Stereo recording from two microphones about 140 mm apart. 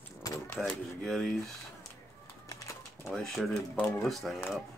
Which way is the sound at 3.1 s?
Centre (ahead or behind).